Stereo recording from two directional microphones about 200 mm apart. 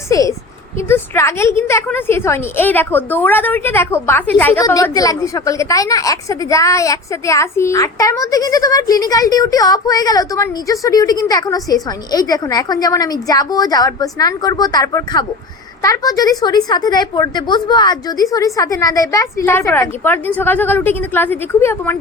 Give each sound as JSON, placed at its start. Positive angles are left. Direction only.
{"t": 0.1, "sound": "a woman's voice", "side_deg": 15}